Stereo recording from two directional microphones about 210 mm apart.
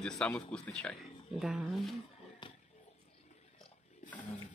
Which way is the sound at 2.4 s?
20° left (ahead or behind).